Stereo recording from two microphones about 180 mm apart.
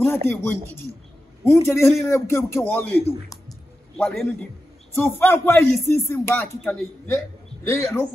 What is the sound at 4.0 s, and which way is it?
A man's voice, 5° left (ahead or behind).